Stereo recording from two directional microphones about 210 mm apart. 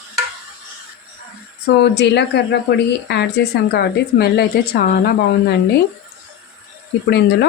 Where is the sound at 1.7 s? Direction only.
55° left (ahead or behind).